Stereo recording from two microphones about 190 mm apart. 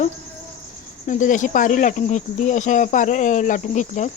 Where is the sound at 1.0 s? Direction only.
40° left (ahead or behind).